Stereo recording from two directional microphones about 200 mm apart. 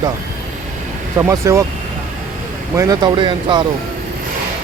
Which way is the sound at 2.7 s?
15° right (ahead or behind).